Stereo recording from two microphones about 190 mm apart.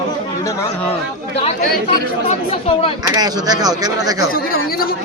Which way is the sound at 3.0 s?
20° right (ahead or behind).